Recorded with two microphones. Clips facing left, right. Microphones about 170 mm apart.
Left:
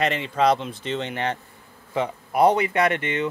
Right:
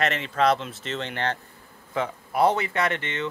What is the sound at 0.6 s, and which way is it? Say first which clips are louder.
Speech: left 4 dB; centre (ahead or behind).